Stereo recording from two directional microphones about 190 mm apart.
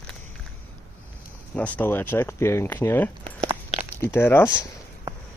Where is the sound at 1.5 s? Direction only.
5° left (ahead or behind).